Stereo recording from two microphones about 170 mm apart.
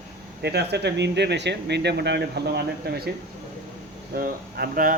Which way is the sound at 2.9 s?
70° right (ahead or behind).